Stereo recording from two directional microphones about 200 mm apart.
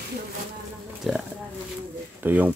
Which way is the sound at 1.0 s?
Centre (ahead or behind).